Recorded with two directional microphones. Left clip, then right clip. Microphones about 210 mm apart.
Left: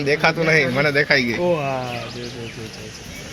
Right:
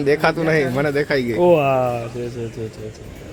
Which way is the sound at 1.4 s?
50° right (ahead or behind).